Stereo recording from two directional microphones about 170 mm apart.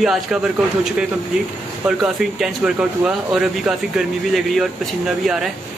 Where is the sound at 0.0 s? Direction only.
Centre (ahead or behind).